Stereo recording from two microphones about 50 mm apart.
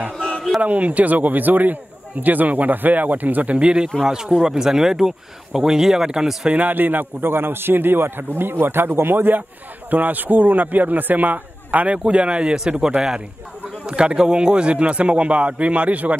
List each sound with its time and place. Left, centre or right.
0.6 s a man's voice: right
3.5 s a man's voice: right
6.5 s a man's voice: right
9.8 s a man's voice: right